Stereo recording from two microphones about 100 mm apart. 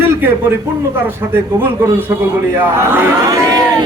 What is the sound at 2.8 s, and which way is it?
Speech, 25° right (ahead or behind).